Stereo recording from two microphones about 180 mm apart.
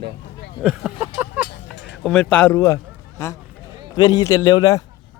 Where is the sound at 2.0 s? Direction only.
5° left (ahead or behind).